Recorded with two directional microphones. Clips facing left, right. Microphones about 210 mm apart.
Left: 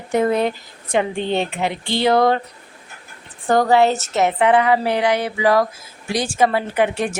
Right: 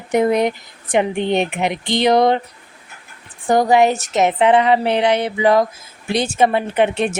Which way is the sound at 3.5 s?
15° right (ahead or behind).